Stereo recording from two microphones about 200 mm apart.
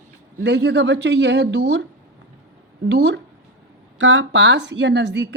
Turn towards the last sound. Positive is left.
turn(degrees=-60)  # may be behind; listen again after turning